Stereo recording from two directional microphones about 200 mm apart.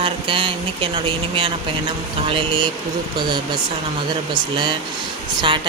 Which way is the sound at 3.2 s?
20° right (ahead or behind).